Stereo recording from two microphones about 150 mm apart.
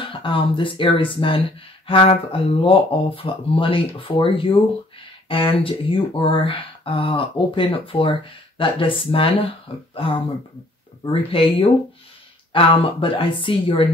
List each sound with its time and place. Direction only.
0.0 s speech: 35° left (ahead or behind)